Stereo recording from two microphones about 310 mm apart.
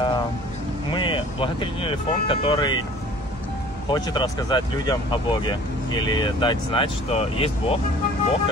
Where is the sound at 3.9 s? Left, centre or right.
Centre.